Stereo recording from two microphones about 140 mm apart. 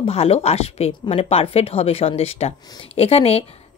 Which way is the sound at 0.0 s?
45° left (ahead or behind).